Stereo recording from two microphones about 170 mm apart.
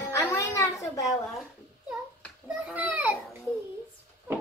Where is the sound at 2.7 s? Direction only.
10° right (ahead or behind).